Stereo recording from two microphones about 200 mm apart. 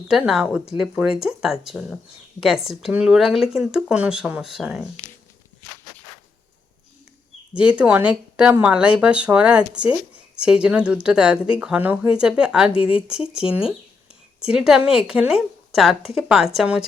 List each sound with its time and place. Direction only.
0.1 s speech: 5° right (ahead or behind)
7.5 s speech: 5° right (ahead or behind)